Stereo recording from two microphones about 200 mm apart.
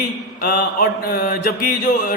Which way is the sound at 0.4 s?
50° left (ahead or behind).